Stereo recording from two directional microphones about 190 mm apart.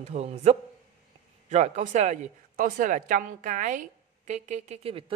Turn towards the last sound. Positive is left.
turn(degrees=-30)  # may be behind; listen again after turning